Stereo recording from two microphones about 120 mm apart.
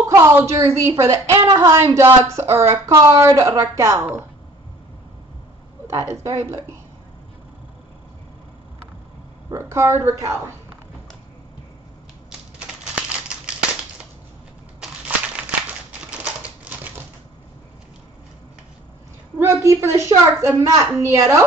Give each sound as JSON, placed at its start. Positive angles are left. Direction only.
{"t": 0.1, "sound": "speech", "side_deg": -20}
{"t": 5.9, "sound": "speech", "side_deg": -25}
{"t": 9.5, "sound": "speech", "side_deg": -25}
{"t": 12.3, "sound": "a sound", "side_deg": -10}
{"t": 14.8, "sound": "crushing", "side_deg": -10}
{"t": 16.1, "sound": "typewriter", "side_deg": -10}
{"t": 19.4, "sound": "speech", "side_deg": -25}